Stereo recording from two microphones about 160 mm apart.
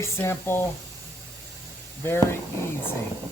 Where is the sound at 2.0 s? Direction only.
15° left (ahead or behind).